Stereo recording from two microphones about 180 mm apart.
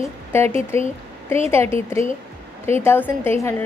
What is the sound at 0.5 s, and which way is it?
Speech, 35° right (ahead or behind).